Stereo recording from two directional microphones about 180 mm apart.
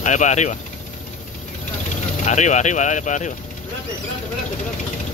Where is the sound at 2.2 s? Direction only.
40° left (ahead or behind).